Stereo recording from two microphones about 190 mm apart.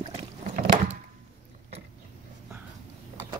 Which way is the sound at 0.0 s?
35° right (ahead or behind).